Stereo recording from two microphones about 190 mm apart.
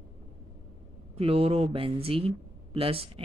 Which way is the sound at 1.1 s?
30° right (ahead or behind).